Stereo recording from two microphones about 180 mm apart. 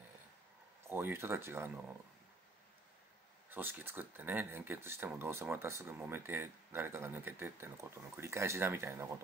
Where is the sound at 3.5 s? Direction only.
10° right (ahead or behind).